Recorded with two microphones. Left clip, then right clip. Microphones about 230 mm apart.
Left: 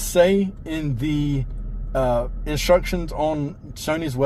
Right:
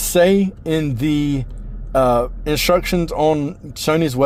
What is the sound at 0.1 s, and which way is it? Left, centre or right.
Speech, right.